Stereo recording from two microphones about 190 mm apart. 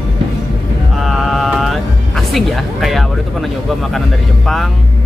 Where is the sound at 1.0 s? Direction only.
Centre (ahead or behind).